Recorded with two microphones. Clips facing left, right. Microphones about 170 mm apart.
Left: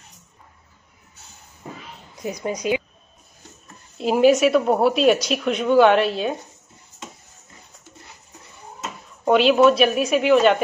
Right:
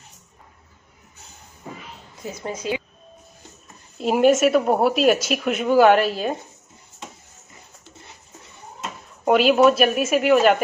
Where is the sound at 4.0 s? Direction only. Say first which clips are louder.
Left 1 dB; centre (ahead or behind).